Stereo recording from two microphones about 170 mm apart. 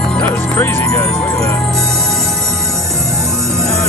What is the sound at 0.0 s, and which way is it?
Music, 5° left (ahead or behind).